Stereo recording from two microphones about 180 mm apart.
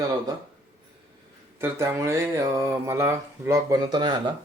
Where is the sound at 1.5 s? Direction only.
15° right (ahead or behind).